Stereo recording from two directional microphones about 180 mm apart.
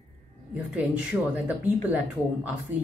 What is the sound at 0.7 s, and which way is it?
Speech, 10° right (ahead or behind).